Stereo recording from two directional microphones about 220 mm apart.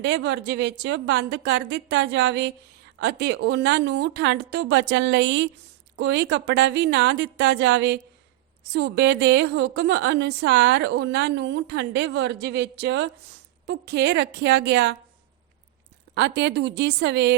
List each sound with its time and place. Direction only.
0.0 s a woman's voice: 50° right (ahead or behind)
16.1 s a woman's voice: 50° right (ahead or behind)